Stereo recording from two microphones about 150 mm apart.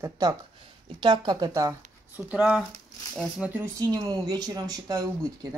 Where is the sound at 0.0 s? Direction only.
25° right (ahead or behind).